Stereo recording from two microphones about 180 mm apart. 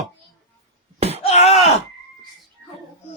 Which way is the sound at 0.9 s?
35° right (ahead or behind).